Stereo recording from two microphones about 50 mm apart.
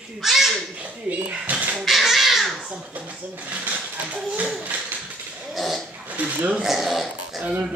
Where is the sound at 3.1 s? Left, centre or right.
Right.